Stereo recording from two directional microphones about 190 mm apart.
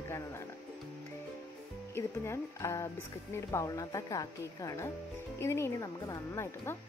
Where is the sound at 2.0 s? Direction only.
15° left (ahead or behind).